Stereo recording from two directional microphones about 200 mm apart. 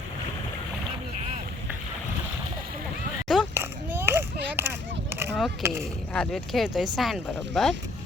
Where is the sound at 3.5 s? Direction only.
10° right (ahead or behind).